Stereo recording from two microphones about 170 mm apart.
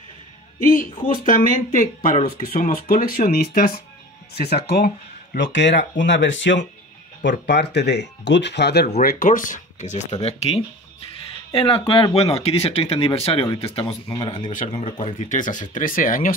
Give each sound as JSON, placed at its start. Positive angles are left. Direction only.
{"t": 0.7, "sound": "speech", "side_deg": 50}
{"t": 4.4, "sound": "speech", "side_deg": 75}
{"t": 7.2, "sound": "speech", "side_deg": 80}
{"t": 9.0, "sound": "speech", "side_deg": 55}
{"t": 14.5, "sound": "speech", "side_deg": 45}